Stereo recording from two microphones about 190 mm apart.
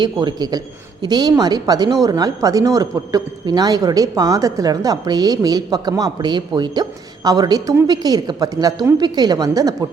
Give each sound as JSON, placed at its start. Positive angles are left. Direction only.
{"t": 0.0, "sound": "speech", "side_deg": -20}